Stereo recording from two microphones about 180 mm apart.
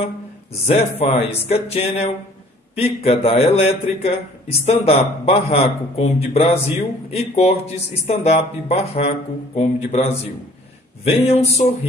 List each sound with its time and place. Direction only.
0.0 s a man's voice: 35° left (ahead or behind)